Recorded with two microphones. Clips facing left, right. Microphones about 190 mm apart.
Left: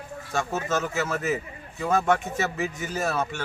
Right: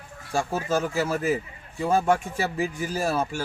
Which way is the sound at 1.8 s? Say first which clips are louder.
Right 1 dB; 10° right (ahead or behind).